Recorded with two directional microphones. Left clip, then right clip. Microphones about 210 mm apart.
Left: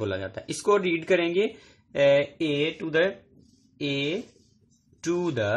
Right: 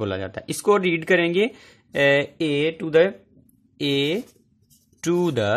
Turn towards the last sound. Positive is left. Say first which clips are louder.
# right 5 dB
turn(degrees=-45)  # may be behind; listen again after turning